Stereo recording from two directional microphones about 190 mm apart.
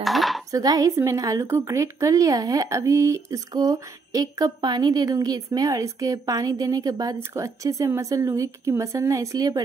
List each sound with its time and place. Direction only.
0.0 s dishes: centre (ahead or behind)
0.5 s a woman's voice: 20° right (ahead or behind)